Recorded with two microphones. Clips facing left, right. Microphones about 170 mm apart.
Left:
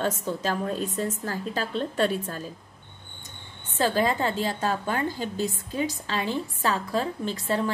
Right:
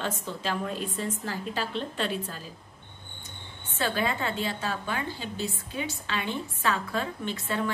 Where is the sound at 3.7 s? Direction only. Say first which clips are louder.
Left 5 dB; 40° left (ahead or behind).